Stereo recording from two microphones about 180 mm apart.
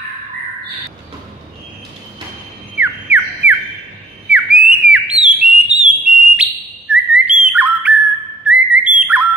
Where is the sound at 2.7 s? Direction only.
10° right (ahead or behind).